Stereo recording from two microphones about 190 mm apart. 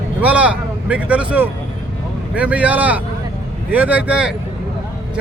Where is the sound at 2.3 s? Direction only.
5° right (ahead or behind).